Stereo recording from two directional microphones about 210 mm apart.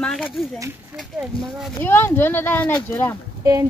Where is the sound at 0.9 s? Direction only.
Centre (ahead or behind).